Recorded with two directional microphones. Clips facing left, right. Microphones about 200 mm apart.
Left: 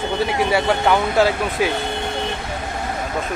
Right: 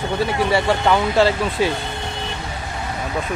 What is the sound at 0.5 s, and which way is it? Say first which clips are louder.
Speech: even; 5° left (ahead or behind).